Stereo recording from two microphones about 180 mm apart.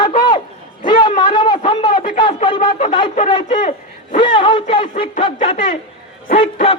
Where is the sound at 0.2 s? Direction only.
25° left (ahead or behind).